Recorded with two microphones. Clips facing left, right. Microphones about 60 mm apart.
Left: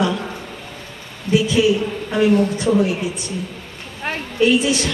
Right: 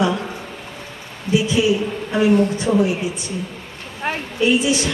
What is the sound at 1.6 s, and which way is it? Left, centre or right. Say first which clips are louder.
Speech: left 2 dB; centre.